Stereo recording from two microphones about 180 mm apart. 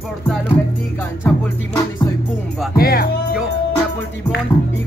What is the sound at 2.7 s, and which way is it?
Music, 55° left (ahead or behind).